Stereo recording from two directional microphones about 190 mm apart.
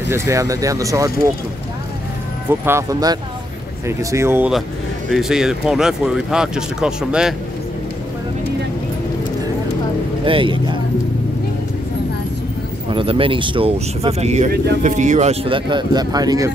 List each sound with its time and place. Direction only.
0.1 s speech: 15° right (ahead or behind)
2.6 s speech: 15° right (ahead or behind)
5.1 s speech: centre (ahead or behind)
10.2 s speech: 25° right (ahead or behind)
12.9 s speech: 30° right (ahead or behind)